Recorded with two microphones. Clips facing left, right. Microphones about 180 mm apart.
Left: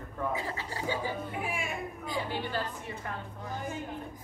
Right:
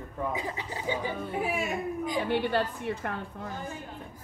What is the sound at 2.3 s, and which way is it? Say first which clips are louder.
Speech: right 7 dB; 65° right (ahead or behind).